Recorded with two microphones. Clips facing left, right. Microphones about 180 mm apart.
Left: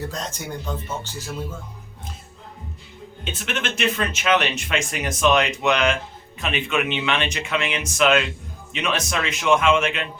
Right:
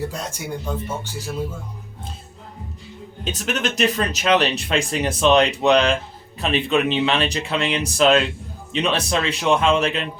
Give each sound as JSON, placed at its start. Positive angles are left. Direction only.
{"t": 0.1, "sound": "speech", "side_deg": -10}
{"t": 3.2, "sound": "speech", "side_deg": -40}